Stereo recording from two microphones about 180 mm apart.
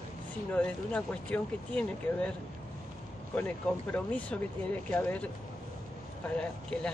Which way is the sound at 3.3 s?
10° left (ahead or behind).